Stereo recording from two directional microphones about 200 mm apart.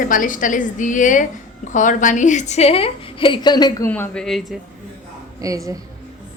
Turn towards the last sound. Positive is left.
turn(degrees=-15)  # may be behind; listen again after turning